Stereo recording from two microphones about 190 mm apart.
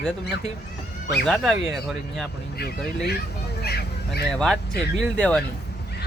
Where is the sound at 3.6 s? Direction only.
55° left (ahead or behind).